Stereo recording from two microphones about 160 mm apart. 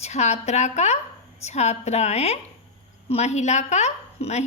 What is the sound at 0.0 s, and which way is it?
Speech, 45° left (ahead or behind).